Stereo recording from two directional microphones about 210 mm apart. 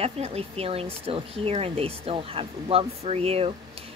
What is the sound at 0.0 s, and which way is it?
Speech, 30° right (ahead or behind).